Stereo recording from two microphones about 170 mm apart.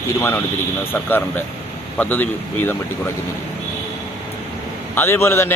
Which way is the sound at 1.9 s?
10° left (ahead or behind).